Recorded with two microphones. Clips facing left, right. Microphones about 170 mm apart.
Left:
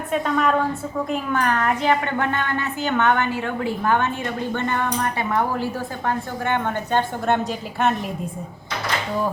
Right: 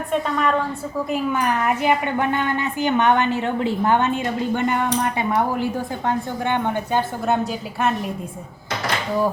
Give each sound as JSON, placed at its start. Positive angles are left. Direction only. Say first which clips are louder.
{"t": 0.1, "sound": "a woman's voice", "louder": "left 1 dB", "side_deg": 0}
{"t": 1.1, "sound": "a woman's voice", "louder": "right 1 dB", "side_deg": -10}
{"t": 6.1, "sound": "a woman's voice", "louder": "right 1 dB", "side_deg": -20}
{"t": 7.3, "sound": "a woman's voice", "louder": "even", "side_deg": 0}